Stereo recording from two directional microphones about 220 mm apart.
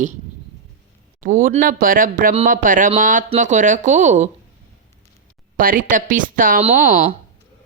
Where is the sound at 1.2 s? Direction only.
40° right (ahead or behind).